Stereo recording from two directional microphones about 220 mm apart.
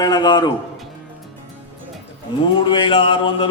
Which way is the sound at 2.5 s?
20° left (ahead or behind).